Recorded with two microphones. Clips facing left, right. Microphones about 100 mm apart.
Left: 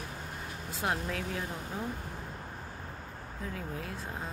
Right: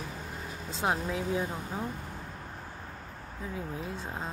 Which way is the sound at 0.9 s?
15° right (ahead or behind).